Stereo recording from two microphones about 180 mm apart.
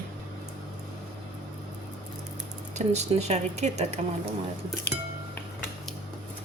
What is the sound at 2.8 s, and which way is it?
Speech, 40° right (ahead or behind).